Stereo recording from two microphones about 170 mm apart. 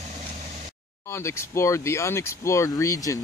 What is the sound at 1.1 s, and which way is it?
Speech, 15° left (ahead or behind).